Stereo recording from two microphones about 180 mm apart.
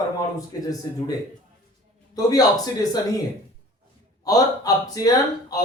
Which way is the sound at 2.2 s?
20° left (ahead or behind).